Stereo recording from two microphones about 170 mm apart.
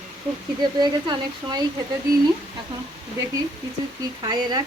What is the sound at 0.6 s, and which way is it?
Speech, 25° right (ahead or behind).